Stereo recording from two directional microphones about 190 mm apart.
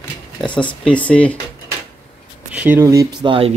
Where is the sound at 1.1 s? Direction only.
5° left (ahead or behind).